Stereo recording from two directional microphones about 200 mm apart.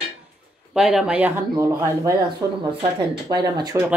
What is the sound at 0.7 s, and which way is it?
Speech, centre (ahead or behind).